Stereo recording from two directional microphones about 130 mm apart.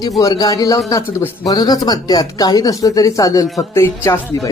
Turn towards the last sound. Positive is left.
turn(degrees=20)  # may be behind; listen again after turning